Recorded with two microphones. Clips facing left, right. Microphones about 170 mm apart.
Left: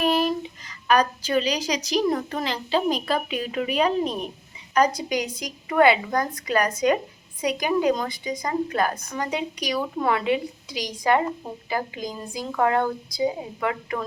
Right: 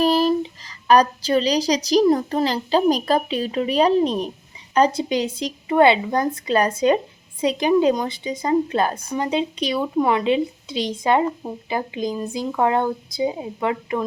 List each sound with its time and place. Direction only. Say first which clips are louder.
0.0 s a woman's voice: right 5 dB; 35° right (ahead or behind)